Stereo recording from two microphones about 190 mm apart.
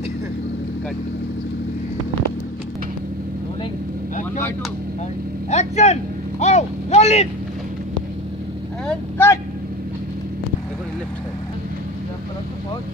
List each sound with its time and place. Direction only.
5.5 s speech: 35° left (ahead or behind)
6.4 s a sound: 35° left (ahead or behind)
8.8 s vehicle: 15° left (ahead or behind)